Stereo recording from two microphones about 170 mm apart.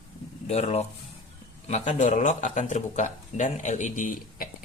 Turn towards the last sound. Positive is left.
turn(degrees=50)  # may be behind; listen again after turning